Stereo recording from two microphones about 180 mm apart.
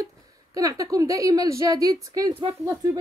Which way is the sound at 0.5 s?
20° right (ahead or behind).